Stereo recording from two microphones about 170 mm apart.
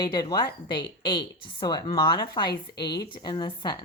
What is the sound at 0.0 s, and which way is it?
Speech, 25° left (ahead or behind).